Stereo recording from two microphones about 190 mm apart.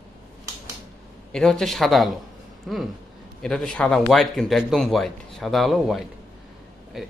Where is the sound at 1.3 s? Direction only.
5° left (ahead or behind).